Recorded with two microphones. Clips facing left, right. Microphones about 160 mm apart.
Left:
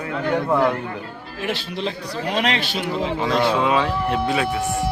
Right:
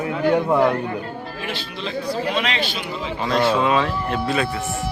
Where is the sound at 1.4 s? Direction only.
65° left (ahead or behind).